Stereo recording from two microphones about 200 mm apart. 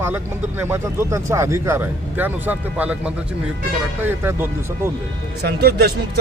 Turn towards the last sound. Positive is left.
turn(degrees=-50)  # may be behind; listen again after turning